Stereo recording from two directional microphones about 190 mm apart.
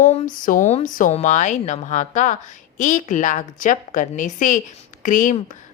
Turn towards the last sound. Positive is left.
turn(degrees=45)  # may be behind; listen again after turning